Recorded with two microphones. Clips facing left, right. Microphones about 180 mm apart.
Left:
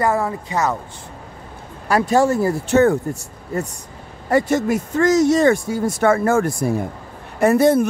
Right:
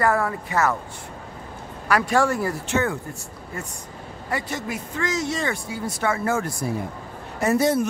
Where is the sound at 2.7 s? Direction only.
40° left (ahead or behind).